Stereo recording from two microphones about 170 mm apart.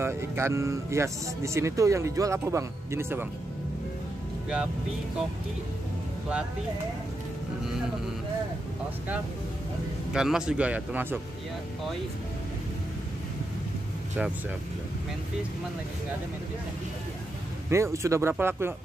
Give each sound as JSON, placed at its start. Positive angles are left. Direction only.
{"t": 0.0, "sound": "speech", "side_deg": -15}
{"t": 10.1, "sound": "speech", "side_deg": -5}
{"t": 17.6, "sound": "speech", "side_deg": -15}